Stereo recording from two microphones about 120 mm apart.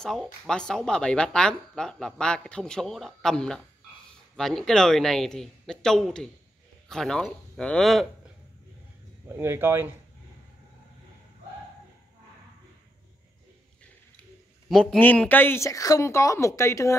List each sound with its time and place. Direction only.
0.0 s speech: 5° left (ahead or behind)
9.3 s speech: 20° right (ahead or behind)
14.7 s a man's voice: 5° left (ahead or behind); by 16.9 s 25° left (ahead or behind)